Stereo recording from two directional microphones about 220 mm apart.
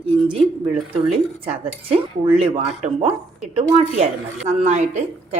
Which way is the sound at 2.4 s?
25° right (ahead or behind).